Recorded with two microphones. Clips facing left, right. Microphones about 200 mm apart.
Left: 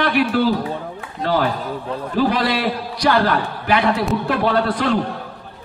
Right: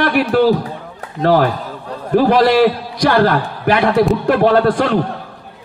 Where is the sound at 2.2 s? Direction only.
50° right (ahead or behind).